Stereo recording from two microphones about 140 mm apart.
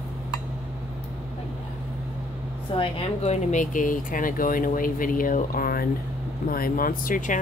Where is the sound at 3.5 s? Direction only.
70° left (ahead or behind).